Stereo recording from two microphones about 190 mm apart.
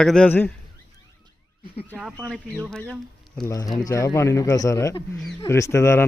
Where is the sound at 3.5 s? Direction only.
20° left (ahead or behind).